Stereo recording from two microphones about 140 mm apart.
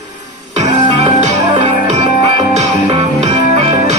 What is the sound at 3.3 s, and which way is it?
Music, 45° right (ahead or behind).